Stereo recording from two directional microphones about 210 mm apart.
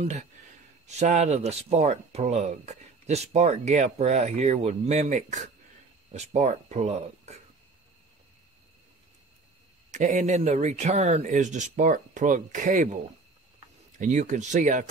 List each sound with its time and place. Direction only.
0.0 s speech: 30° right (ahead or behind)
9.8 s speech: 35° right (ahead or behind)